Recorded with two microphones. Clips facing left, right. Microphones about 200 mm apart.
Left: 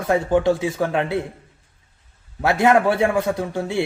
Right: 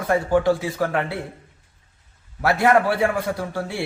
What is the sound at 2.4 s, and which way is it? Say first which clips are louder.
A man's voice: left 2 dB; 20° left (ahead or behind).